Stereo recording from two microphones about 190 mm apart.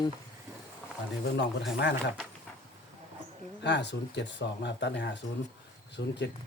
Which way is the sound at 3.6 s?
65° left (ahead or behind).